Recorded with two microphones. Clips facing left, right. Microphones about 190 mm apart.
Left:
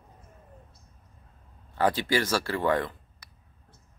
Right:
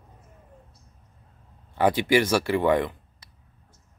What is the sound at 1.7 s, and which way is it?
Speech, 15° right (ahead or behind).